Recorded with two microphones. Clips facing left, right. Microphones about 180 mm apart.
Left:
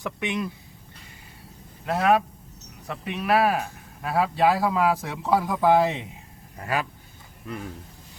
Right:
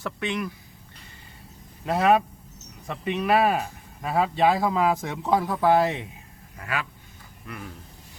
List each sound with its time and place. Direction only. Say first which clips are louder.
0.0 s speech: left 1 dB; 20° left (ahead or behind)
1.9 s speech: right 1 dB; centre (ahead or behind); by 6.1 s 15° left (ahead or behind)
6.6 s speech: left 4 dB; 40° left (ahead or behind)